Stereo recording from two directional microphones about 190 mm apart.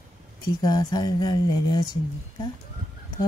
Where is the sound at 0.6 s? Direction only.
20° left (ahead or behind).